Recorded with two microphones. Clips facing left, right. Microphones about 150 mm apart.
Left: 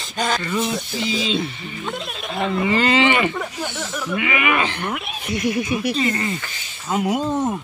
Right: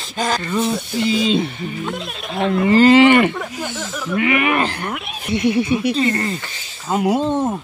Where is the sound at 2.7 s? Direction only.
45° right (ahead or behind).